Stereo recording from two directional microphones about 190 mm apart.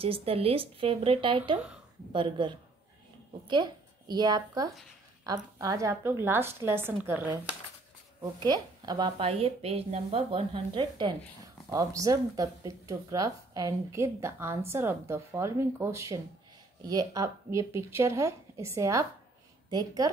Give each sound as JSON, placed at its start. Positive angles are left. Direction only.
{"t": 0.0, "sound": "a woman's voice", "side_deg": -30}
{"t": 8.2, "sound": "a woman's voice", "side_deg": -20}